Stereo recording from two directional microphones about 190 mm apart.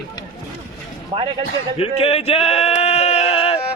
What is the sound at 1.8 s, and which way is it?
Bleat, 30° left (ahead or behind).